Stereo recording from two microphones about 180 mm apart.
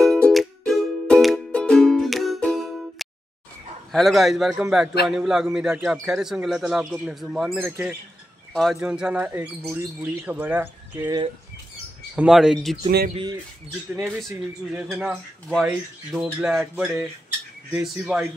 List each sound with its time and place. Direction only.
0.0 s music: centre (ahead or behind)
3.9 s a man's voice: centre (ahead or behind)
8.7 s speech: 5° right (ahead or behind)
12.2 s a man's voice: 5° right (ahead or behind)
13.1 s speech: 25° right (ahead or behind)
13.8 s a man's voice: 10° right (ahead or behind)